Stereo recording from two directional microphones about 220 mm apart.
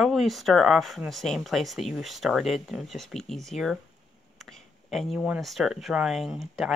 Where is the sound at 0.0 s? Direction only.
Centre (ahead or behind).